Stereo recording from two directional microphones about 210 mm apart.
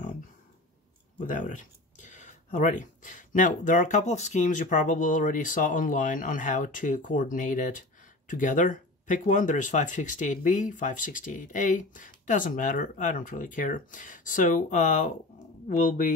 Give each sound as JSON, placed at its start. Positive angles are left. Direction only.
{"t": 1.2, "sound": "speech", "side_deg": 35}